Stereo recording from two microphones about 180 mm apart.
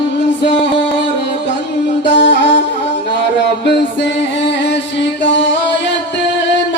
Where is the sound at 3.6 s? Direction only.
75° left (ahead or behind).